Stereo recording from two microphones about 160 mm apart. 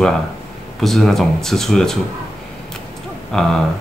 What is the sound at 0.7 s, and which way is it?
Speech, centre (ahead or behind).